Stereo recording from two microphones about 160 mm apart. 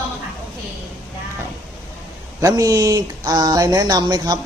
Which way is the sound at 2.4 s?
25° right (ahead or behind).